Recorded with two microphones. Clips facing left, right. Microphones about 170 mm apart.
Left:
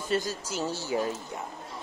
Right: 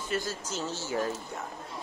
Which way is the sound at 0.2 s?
15° left (ahead or behind).